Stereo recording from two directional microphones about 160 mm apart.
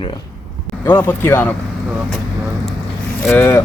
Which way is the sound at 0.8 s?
15° left (ahead or behind).